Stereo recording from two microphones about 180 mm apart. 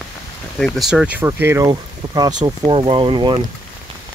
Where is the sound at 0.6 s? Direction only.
Centre (ahead or behind); by 3.3 s 25° right (ahead or behind).